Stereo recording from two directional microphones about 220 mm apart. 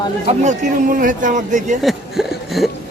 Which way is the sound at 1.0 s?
35° right (ahead or behind).